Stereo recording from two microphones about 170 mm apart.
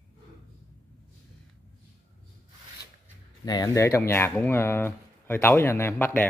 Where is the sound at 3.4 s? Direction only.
20° left (ahead or behind).